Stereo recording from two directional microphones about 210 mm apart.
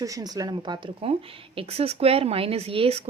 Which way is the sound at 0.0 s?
15° right (ahead or behind).